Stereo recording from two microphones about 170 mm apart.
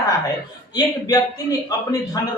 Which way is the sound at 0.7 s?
20° left (ahead or behind).